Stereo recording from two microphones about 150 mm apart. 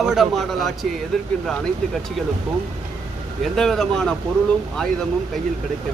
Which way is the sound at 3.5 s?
Centre (ahead or behind).